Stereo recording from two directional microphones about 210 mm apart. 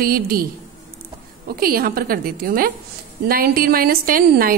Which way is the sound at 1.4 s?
45° right (ahead or behind).